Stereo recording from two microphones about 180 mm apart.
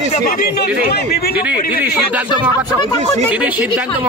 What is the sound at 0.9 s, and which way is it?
Speech, 60° left (ahead or behind).